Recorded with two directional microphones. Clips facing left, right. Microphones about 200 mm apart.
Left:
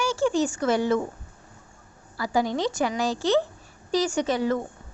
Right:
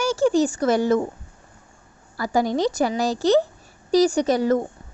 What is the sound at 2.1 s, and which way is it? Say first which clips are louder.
A woman's voice: right 4 dB; 45° right (ahead or behind).